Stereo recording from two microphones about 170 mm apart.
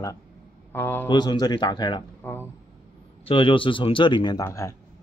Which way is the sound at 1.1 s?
25° left (ahead or behind).